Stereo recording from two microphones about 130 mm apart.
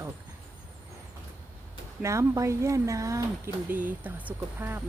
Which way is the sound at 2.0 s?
25° right (ahead or behind).